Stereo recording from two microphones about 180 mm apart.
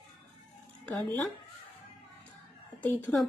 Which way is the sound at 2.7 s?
10° left (ahead or behind).